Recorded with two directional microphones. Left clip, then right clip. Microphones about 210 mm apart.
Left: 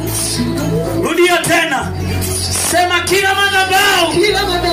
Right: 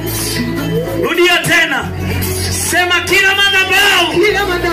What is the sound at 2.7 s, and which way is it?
Music, 55° left (ahead or behind).